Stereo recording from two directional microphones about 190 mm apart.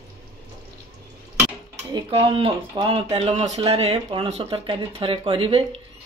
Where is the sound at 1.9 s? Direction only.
25° right (ahead or behind).